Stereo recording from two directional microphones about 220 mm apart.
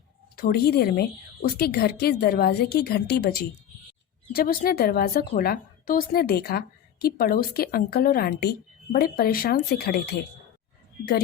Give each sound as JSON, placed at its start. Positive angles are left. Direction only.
{"t": 0.3, "sound": "a woman's voice", "side_deg": 45}